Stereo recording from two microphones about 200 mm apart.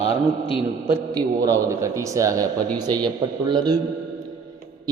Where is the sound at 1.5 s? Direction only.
15° right (ahead or behind).